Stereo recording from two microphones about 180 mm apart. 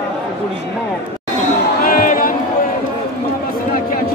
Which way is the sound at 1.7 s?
55° left (ahead or behind).